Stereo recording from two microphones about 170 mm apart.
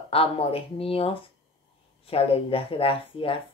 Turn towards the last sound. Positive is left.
turn(degrees=30)  # may be behind; listen again after turning